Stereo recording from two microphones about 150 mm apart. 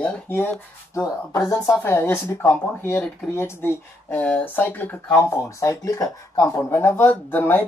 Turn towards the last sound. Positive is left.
turn(degrees=15)  # may be behind; listen again after turning